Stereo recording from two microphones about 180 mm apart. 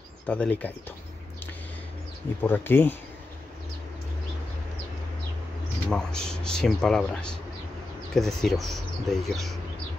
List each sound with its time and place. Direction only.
0.3 s speech: 5° left (ahead or behind)
2.4 s speech: 10° left (ahead or behind)
5.9 s speech: 5° left (ahead or behind)